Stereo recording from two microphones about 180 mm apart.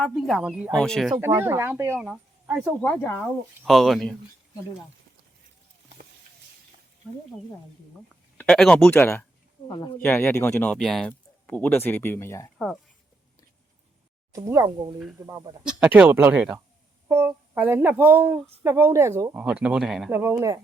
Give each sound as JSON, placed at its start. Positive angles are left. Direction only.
{"t": 0.0, "sound": "speech", "side_deg": 0}
{"t": 1.2, "sound": "speech", "side_deg": -15}
{"t": 2.8, "sound": "speech", "side_deg": 10}
{"t": 8.1, "sound": "speech", "side_deg": 5}
{"t": 9.6, "sound": "speech", "side_deg": 25}
{"t": 10.0, "sound": "speech", "side_deg": 10}
{"t": 12.5, "sound": "speech", "side_deg": 5}
{"t": 14.3, "sound": "speech", "side_deg": -15}
{"t": 15.6, "sound": "speech", "side_deg": -5}
{"t": 20.1, "sound": "speech", "side_deg": -15}